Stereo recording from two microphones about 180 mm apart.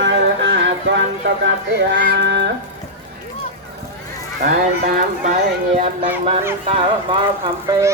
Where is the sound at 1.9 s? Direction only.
80° right.